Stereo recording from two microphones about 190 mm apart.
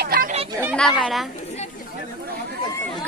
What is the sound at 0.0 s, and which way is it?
Chatter, 50° right (ahead or behind).